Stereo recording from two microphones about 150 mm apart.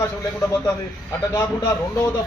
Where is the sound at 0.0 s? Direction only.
15° left (ahead or behind).